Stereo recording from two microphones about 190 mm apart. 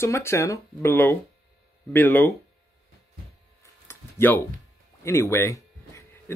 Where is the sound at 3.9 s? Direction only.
10° left (ahead or behind).